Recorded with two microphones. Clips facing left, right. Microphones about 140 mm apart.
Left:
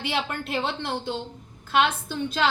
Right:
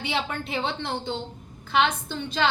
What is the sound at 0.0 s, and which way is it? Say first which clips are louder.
A woman's voice: even; centre (ahead or behind).